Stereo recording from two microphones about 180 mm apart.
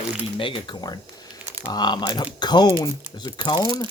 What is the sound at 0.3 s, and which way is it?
Speech, 30° left (ahead or behind).